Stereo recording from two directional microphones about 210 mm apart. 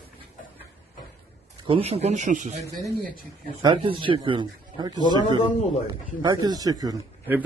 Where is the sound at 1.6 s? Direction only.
25° right (ahead or behind).